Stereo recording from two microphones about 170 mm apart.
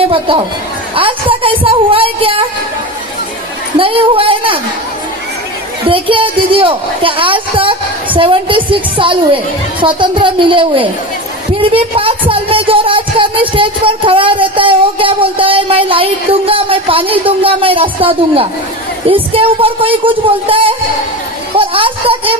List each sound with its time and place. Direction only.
0.0 s speech: 30° right (ahead or behind)
3.7 s speech: 30° right (ahead or behind)
5.9 s speech: 30° right (ahead or behind)